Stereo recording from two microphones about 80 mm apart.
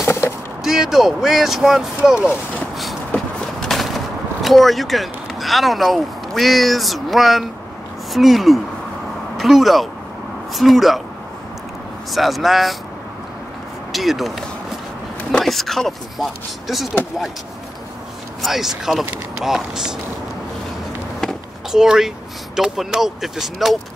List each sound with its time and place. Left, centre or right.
0.0 s a sound: left
0.7 s speech: centre
3.6 s speech: centre
12.1 s speech: centre
13.9 s speech: centre
15.3 s speech: centre
18.4 s speech: centre
21.2 s a sound: centre
21.8 s speech: centre